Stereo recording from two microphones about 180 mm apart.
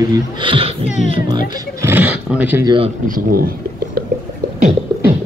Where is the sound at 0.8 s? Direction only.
40° left (ahead or behind).